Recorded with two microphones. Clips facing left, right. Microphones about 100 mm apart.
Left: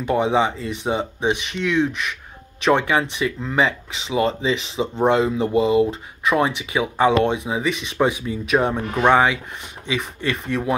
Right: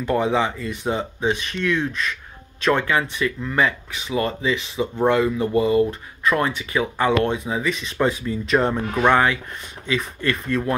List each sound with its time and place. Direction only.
0.0 s speech: 20° left (ahead or behind)